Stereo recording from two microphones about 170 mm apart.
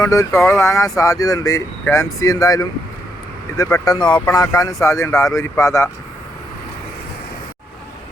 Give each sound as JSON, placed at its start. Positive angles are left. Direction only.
{"t": 0.0, "sound": "speech", "side_deg": 20}